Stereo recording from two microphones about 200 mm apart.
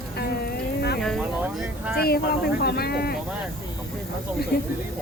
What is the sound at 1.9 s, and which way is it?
Speech, 50° left (ahead or behind).